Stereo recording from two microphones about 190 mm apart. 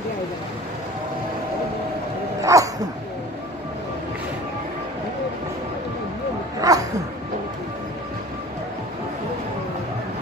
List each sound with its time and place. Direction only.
2.4 s dog: 15° right (ahead or behind)
6.6 s dog: 20° right (ahead or behind)